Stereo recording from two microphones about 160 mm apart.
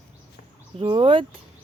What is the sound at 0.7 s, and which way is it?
Speech, 35° right (ahead or behind).